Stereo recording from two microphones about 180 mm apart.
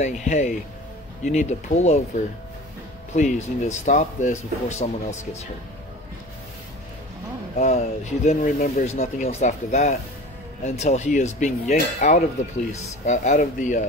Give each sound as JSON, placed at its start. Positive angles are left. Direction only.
{"t": 0.0, "sound": "speech", "side_deg": 40}
{"t": 3.2, "sound": "speech", "side_deg": 40}
{"t": 7.5, "sound": "speech", "side_deg": 35}